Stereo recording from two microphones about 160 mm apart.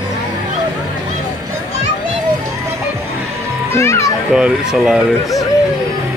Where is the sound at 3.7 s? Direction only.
15° left (ahead or behind).